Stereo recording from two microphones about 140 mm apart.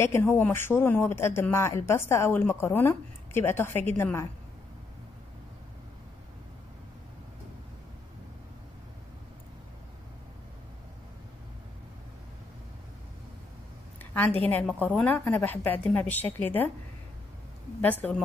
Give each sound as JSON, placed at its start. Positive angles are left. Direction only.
{"t": 0.0, "sound": "speech", "side_deg": 20}
{"t": 13.9, "sound": "a sound", "side_deg": 15}
{"t": 14.5, "sound": "speech", "side_deg": 10}
{"t": 17.8, "sound": "speech", "side_deg": 10}